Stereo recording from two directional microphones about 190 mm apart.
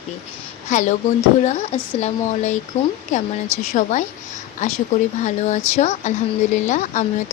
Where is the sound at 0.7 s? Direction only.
40° left (ahead or behind).